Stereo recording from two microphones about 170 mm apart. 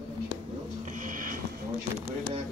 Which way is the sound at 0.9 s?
50° right (ahead or behind).